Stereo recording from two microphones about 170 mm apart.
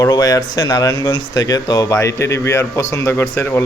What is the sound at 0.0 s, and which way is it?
Speech, 20° left (ahead or behind).